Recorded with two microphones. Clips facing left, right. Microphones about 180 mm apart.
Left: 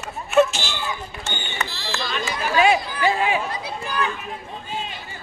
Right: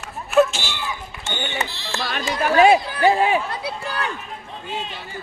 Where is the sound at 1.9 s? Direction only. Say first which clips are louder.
Right 3 dB; 55° right (ahead or behind).